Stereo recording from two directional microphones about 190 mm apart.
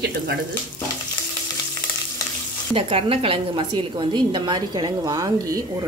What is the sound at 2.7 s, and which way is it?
A woman's voice, 30° right (ahead or behind).